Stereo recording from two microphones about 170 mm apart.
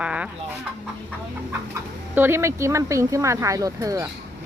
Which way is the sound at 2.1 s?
15° right (ahead or behind).